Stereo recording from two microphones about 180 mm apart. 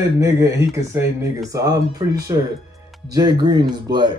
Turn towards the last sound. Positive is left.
turn(degrees=-25)  # may be behind; listen again after turning